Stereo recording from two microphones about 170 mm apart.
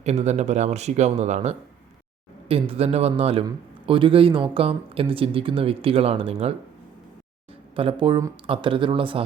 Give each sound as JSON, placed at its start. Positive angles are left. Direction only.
{"t": 0.0, "sound": "speech", "side_deg": -40}
{"t": 7.8, "sound": "speech", "side_deg": -30}